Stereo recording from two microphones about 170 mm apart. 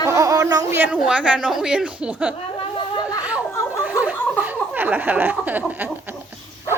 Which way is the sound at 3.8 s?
10° right (ahead or behind).